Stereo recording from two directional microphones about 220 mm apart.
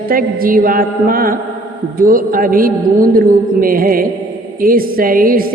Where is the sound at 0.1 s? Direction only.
40° right (ahead or behind).